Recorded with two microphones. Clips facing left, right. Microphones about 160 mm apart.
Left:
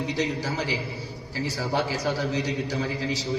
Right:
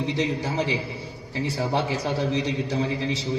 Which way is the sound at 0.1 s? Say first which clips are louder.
Right 2 dB; 25° right (ahead or behind).